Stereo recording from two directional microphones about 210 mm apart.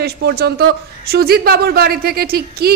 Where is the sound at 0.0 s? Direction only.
50° right (ahead or behind).